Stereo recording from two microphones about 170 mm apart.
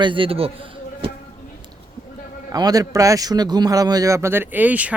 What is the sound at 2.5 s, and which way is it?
Speech, 20° right (ahead or behind).